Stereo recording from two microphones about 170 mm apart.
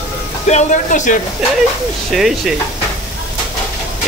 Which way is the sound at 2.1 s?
Centre (ahead or behind).